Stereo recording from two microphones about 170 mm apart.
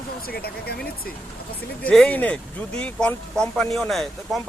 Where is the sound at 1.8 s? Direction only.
5° left (ahead or behind).